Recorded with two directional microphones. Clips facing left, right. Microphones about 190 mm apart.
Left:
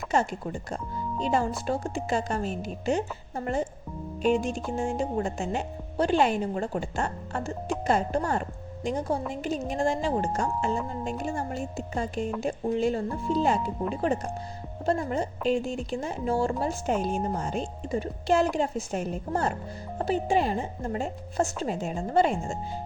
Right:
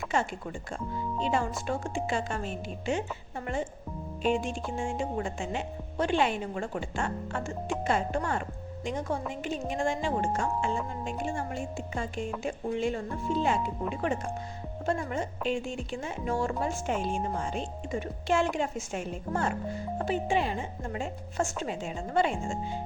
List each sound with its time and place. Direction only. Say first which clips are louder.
0.1 s a woman's voice: left 5 dB; 40° left (ahead or behind)